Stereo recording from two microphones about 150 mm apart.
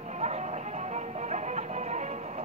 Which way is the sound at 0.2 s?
45° right (ahead or behind).